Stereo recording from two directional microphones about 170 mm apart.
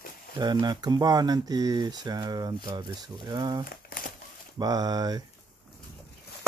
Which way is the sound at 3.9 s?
60° left (ahead or behind).